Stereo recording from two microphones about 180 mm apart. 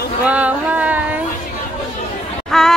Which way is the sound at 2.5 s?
5° left (ahead or behind).